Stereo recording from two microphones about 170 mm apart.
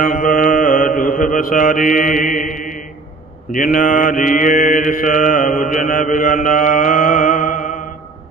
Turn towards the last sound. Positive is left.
turn(degrees=50)  # may be behind; listen again after turning